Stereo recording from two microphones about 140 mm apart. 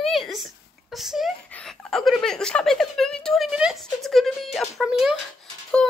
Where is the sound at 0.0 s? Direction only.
Centre (ahead or behind).